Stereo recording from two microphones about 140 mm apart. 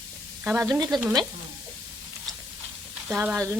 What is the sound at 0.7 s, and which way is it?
Sizzle, 30° right (ahead or behind).